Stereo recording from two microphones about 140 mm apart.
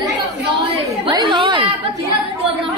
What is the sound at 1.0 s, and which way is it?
Speech, 35° right (ahead or behind).